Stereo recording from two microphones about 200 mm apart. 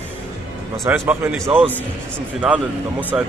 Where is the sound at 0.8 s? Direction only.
10° right (ahead or behind).